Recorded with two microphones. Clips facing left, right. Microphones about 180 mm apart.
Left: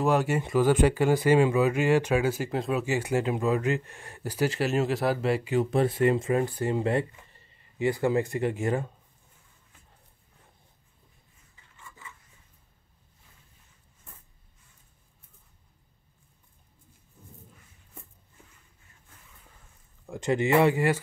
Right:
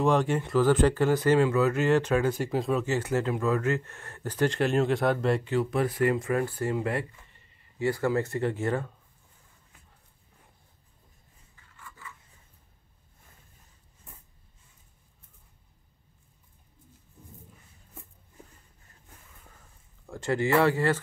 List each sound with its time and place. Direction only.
0.0 s speech: 5° left (ahead or behind)
2.8 s speech: 10° left (ahead or behind)
5.6 s speech: 25° left (ahead or behind)
11.7 s a sound: 20° left (ahead or behind)
20.1 s speech: 20° left (ahead or behind)